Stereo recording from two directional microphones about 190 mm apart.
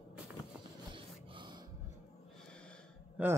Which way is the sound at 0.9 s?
25° right (ahead or behind).